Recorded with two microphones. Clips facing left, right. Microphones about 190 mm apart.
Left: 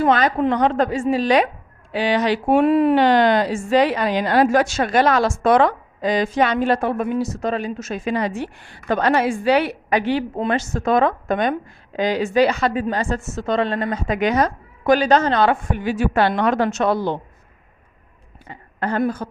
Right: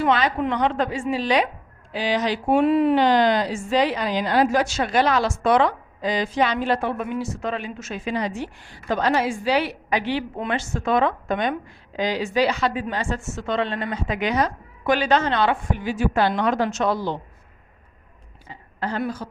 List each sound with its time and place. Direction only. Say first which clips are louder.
0.0 s speech: left 4 dB; 45° left (ahead or behind)
1.9 s speech: left 4 dB; 60° left (ahead or behind)
18.4 s a woman's voice: left 4 dB; 55° left (ahead or behind)